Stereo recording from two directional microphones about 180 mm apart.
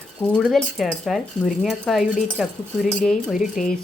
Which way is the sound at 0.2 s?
5° left (ahead or behind).